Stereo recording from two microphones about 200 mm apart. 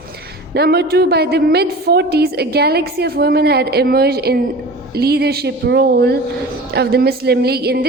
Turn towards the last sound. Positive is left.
turn(degrees=-50)  # may be behind; listen again after turning